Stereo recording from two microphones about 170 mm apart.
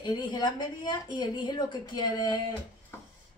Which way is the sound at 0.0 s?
25° left (ahead or behind).